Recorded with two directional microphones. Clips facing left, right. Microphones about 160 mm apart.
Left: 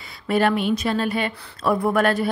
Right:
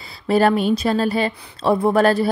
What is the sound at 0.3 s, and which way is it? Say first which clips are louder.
Speech: right 4 dB; 35° right (ahead or behind).